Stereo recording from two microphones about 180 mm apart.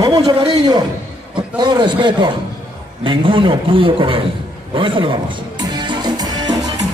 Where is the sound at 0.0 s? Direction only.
25° right (ahead or behind).